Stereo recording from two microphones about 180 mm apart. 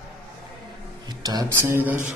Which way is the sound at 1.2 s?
20° right (ahead or behind).